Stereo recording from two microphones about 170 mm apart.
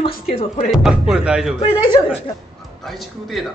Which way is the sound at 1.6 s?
25° left (ahead or behind).